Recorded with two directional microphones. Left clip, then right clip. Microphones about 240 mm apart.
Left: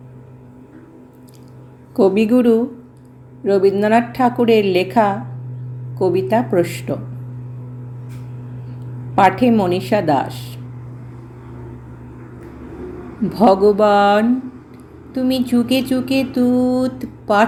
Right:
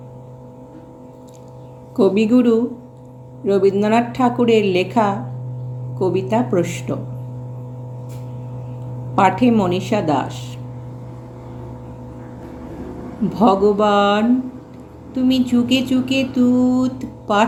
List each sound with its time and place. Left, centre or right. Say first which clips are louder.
2.0 s music: left 1 dB; left
9.4 s music: left 1 dB; centre
13.3 s music: left 2 dB; left